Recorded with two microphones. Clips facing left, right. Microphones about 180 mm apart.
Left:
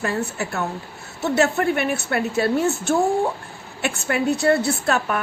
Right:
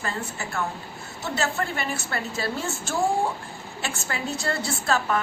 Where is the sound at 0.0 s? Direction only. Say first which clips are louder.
Left 7 dB; 65° left (ahead or behind).